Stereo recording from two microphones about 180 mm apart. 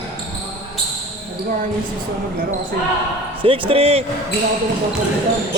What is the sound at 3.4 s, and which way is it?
Speech, 30° right (ahead or behind).